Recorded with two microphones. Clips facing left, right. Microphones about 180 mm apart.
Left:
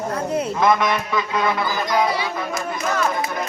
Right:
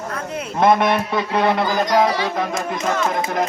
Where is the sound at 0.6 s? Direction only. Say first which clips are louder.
Right 5 dB; 55° right (ahead or behind).